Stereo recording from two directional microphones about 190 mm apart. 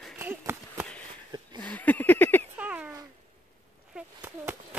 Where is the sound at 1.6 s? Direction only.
10° left (ahead or behind).